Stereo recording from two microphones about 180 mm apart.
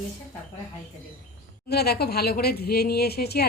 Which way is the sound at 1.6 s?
60° left (ahead or behind).